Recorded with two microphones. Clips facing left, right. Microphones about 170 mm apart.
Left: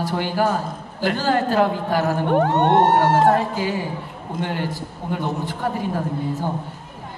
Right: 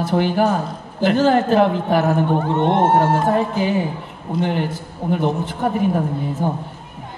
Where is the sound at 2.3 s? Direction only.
70° left (ahead or behind).